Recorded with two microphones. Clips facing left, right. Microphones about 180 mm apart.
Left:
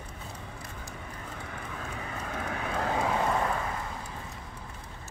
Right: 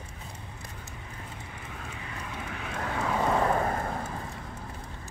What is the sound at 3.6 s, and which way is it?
Vehicle, 50° right (ahead or behind).